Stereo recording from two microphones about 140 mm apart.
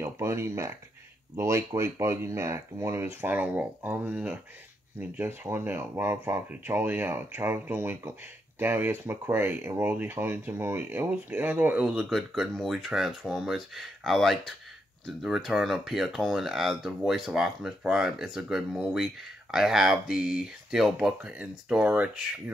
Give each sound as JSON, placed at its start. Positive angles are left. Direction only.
{"t": 0.0, "sound": "speech", "side_deg": -20}